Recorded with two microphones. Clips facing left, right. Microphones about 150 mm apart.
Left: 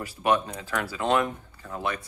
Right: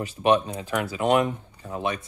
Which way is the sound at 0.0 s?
20° right (ahead or behind).